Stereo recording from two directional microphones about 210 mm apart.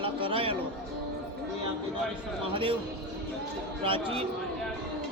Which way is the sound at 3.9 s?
25° right (ahead or behind).